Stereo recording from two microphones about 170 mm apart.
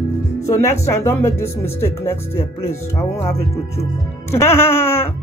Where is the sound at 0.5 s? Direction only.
15° left (ahead or behind).